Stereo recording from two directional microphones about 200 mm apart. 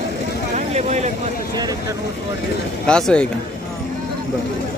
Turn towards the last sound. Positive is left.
turn(degrees=5)  # may be behind; listen again after turning